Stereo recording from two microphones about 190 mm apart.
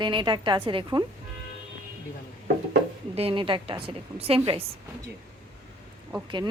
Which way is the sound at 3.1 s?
30° right (ahead or behind).